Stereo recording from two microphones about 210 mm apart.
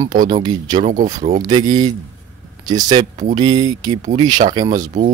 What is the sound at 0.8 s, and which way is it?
Speech, 40° right (ahead or behind).